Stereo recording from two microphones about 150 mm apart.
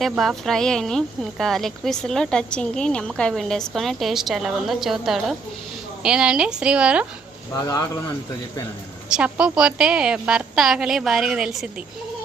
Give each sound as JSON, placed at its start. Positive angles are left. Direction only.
{"t": 0.0, "sound": "speech", "side_deg": 0}
{"t": 7.5, "sound": "speech", "side_deg": 25}
{"t": 9.1, "sound": "speech", "side_deg": -5}